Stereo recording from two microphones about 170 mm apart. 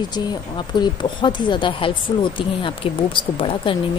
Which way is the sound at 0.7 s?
25° left (ahead or behind).